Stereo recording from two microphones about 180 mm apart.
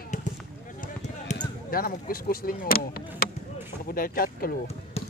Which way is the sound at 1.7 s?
55° left (ahead or behind).